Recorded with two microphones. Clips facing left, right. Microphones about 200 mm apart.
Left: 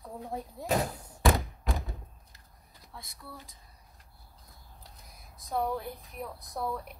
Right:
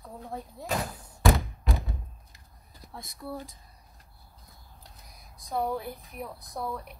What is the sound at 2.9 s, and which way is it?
Speech, 45° right (ahead or behind).